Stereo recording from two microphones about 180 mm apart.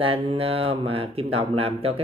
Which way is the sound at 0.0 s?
30° right (ahead or behind).